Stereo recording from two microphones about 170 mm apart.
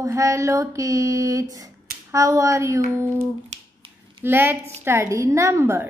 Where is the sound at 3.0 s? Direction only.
15° right (ahead or behind).